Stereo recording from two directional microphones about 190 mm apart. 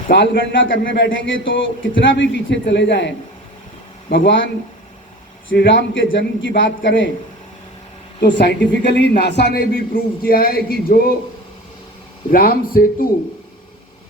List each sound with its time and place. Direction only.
0.1 s a man's voice: 75° left (ahead or behind)
0.8 s a man's voice: 65° left (ahead or behind)
5.5 s a man's voice: 75° left (ahead or behind)
8.2 s a man's voice: 60° left (ahead or behind)
12.3 s a man's voice: 50° left (ahead or behind)